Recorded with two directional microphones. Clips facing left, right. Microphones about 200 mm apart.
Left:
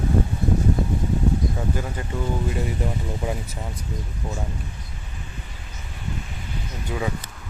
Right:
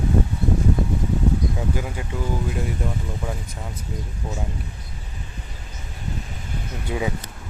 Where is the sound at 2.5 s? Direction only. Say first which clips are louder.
Left 1 dB; centre (ahead or behind).